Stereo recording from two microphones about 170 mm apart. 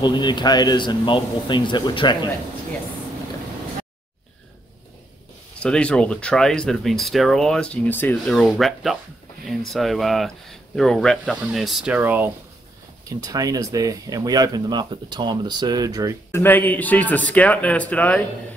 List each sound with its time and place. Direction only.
0.0 s speech: 25° left (ahead or behind)
5.6 s speech: 5° left (ahead or behind); by 12.3 s 10° right (ahead or behind)
13.1 s speech: 20° right (ahead or behind)
16.3 s speech: 10° left (ahead or behind)